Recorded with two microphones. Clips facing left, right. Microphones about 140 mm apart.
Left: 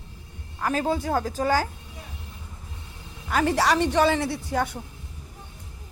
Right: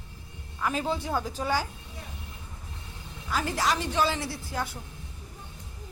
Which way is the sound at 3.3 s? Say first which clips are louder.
Left 6 dB; 65° left (ahead or behind).